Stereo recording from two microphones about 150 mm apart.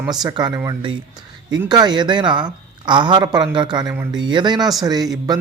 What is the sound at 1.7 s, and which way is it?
A man's voice, 30° right (ahead or behind).